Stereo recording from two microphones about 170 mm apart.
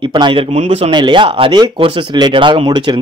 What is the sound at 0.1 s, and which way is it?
Speech, 30° right (ahead or behind).